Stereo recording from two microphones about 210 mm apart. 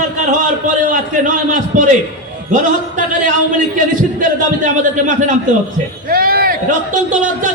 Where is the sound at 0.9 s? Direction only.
40° right (ahead or behind).